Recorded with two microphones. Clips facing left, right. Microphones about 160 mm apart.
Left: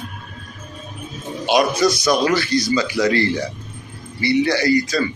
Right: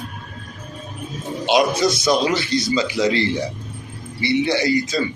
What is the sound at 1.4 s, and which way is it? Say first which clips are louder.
A man's voice: left 1 dB; 20° right (ahead or behind).